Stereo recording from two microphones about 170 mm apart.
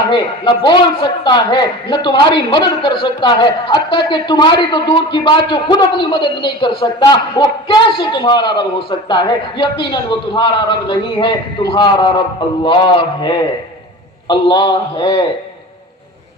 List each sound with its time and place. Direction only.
0.6 s a man's voice: 25° left (ahead or behind)